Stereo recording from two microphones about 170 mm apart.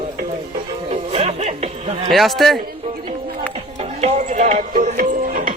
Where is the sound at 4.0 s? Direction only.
40° right (ahead or behind).